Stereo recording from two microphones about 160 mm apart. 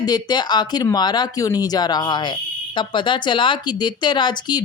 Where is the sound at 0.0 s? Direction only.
25° left (ahead or behind).